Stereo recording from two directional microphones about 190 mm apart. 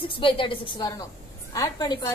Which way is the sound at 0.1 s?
25° left (ahead or behind).